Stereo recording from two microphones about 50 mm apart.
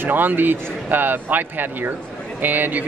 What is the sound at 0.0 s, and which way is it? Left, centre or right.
Speech, right.